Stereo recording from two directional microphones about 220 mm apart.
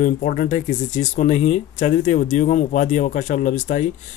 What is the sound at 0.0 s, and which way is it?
Speech, 35° left (ahead or behind).